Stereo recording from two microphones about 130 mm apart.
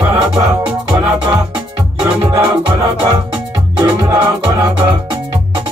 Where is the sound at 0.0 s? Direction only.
30° right (ahead or behind).